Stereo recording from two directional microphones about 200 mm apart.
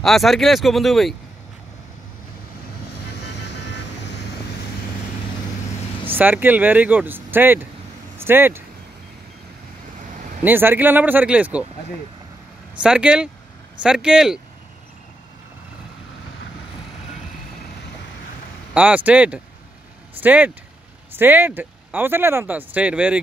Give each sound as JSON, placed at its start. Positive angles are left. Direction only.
{"t": 0.0, "sound": "speech", "side_deg": 0}
{"t": 3.4, "sound": "vehicle", "side_deg": 60}
{"t": 6.1, "sound": "speech", "side_deg": -10}
{"t": 10.4, "sound": "speech", "side_deg": -10}
{"t": 12.8, "sound": "speech", "side_deg": -5}
{"t": 18.7, "sound": "speech", "side_deg": -5}